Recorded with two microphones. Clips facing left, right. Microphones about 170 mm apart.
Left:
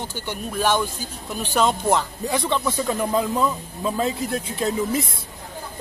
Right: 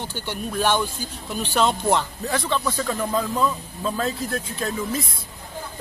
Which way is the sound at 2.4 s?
20° left (ahead or behind).